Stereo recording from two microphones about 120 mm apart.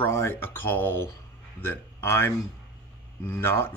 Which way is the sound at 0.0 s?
20° left (ahead or behind).